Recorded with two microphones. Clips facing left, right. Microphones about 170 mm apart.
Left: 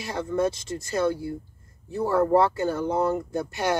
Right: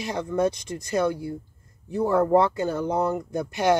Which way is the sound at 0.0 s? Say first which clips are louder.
Right 1 dB; 20° right (ahead or behind).